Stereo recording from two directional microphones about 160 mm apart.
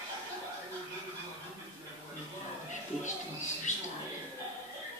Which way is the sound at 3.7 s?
50° left (ahead or behind).